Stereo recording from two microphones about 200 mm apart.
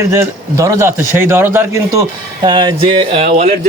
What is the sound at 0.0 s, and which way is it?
A man's voice, 15° right (ahead or behind).